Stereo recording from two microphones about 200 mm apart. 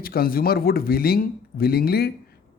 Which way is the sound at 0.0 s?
45° left (ahead or behind).